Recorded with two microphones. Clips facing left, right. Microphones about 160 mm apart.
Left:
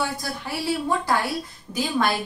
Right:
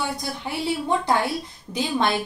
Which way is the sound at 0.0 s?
20° right (ahead or behind).